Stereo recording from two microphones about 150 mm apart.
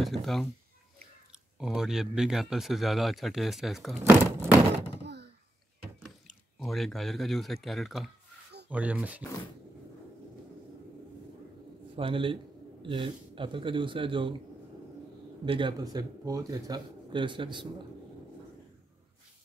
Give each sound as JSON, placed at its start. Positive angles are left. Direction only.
{"t": 0.0, "sound": "speech", "side_deg": 0}
{"t": 1.6, "sound": "speech", "side_deg": -5}
{"t": 4.0, "sound": "speech", "side_deg": -15}
{"t": 6.6, "sound": "speech", "side_deg": 0}
{"t": 11.9, "sound": "speech", "side_deg": -35}
{"t": 15.4, "sound": "speech", "side_deg": -35}